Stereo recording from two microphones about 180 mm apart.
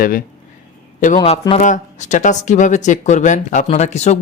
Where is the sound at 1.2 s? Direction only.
35° left (ahead or behind).